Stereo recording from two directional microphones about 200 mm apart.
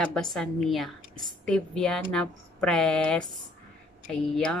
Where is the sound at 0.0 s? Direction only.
5° left (ahead or behind).